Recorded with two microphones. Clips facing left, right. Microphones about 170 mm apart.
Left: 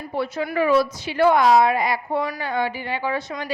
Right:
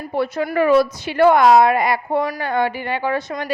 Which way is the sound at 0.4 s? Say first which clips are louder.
Right 4 dB; 50° right (ahead or behind).